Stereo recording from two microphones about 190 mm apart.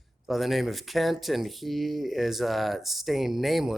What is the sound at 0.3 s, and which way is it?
Speech, centre (ahead or behind).